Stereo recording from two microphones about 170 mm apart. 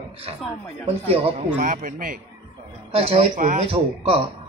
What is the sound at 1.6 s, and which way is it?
Speech, 55° right (ahead or behind).